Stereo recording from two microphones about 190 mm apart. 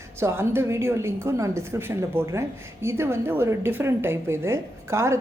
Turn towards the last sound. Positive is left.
turn(degrees=-15)  # may be behind; listen again after turning